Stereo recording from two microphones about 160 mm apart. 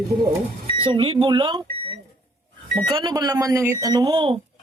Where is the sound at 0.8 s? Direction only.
35° right (ahead or behind).